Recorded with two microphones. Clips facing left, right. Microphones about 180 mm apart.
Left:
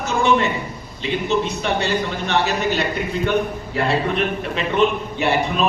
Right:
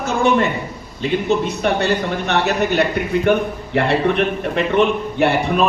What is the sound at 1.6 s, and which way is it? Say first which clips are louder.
A man's voice: right 3 dB; 55° right (ahead or behind).